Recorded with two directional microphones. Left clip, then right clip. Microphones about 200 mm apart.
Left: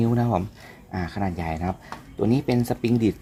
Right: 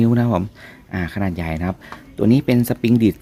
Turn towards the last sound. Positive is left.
turn(degrees=-30)  # may be behind; listen again after turning